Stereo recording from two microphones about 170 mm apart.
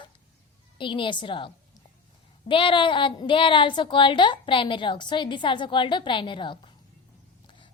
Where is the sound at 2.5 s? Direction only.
30° left (ahead or behind).